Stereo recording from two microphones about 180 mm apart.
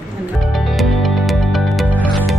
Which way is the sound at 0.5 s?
Centre (ahead or behind).